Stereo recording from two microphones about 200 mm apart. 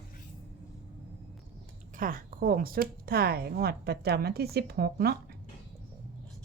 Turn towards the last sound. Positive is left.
turn(degrees=-50)  # may be behind; listen again after turning